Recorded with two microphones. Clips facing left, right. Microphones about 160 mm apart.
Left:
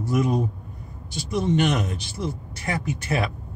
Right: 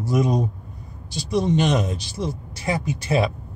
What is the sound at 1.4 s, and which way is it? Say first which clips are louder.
Speech: even; 20° right (ahead or behind).